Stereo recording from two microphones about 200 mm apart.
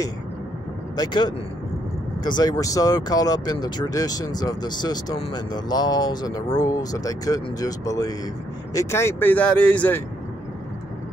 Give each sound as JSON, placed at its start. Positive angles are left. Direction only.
{"t": 0.9, "sound": "speech", "side_deg": 20}